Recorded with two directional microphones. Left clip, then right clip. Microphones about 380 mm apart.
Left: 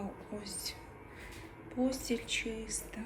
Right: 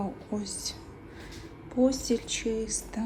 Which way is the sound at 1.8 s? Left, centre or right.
Centre.